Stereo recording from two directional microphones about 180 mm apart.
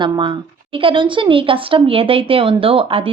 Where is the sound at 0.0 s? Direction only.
25° right (ahead or behind).